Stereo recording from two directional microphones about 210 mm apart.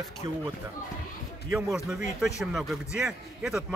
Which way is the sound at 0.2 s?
20° right (ahead or behind).